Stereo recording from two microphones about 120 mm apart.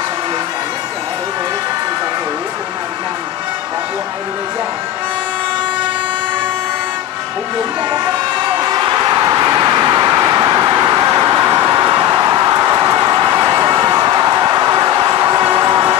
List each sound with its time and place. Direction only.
8.5 s vehicle: 35° right (ahead or behind)
15.4 s vehicle: 20° right (ahead or behind)